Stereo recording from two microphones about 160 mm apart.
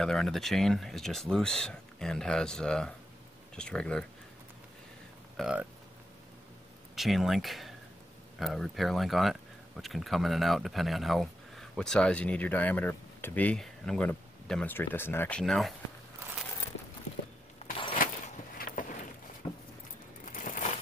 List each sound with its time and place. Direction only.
0.0 s speech: 5° left (ahead or behind)
5.4 s speech: 5° right (ahead or behind)
7.0 s speech: centre (ahead or behind)
18.0 s a sound: 60° left (ahead or behind)
19.4 s keys jangling: 20° left (ahead or behind)
20.3 s crumpling: 55° left (ahead or behind)